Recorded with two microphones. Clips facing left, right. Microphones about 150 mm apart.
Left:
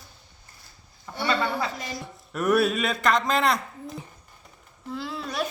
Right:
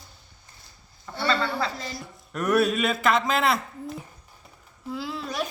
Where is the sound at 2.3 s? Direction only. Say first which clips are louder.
Even; centre (ahead or behind).